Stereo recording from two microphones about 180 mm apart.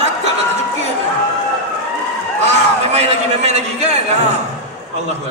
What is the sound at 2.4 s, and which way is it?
A man's voice, 40° right (ahead or behind).